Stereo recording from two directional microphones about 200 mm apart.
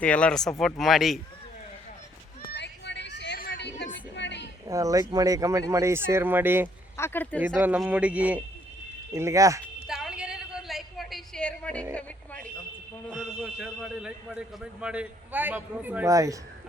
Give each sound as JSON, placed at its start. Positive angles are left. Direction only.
{"t": 0.0, "sound": "speech", "side_deg": 5}
{"t": 2.4, "sound": "children playing", "side_deg": 55}
{"t": 4.1, "sound": "a sound", "side_deg": 60}
{"t": 4.7, "sound": "a man's voice", "side_deg": -15}
{"t": 6.9, "sound": "speech", "side_deg": 10}
{"t": 7.6, "sound": "a man's voice", "side_deg": -10}
{"t": 9.8, "sound": "a sound", "side_deg": 0}
{"t": 13.1, "sound": "a man's voice", "side_deg": -5}